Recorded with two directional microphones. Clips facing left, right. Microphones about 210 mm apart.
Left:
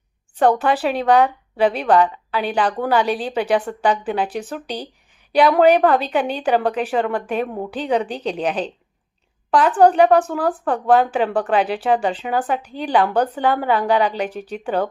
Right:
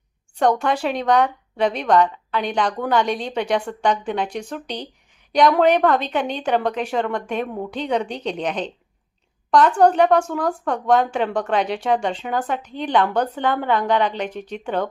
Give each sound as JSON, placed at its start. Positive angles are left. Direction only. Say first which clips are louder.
{"t": 0.3, "sound": "a woman's voice", "louder": "left 2 dB", "side_deg": 5}